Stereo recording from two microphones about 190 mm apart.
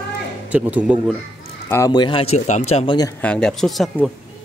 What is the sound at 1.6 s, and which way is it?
Speech, 15° left (ahead or behind).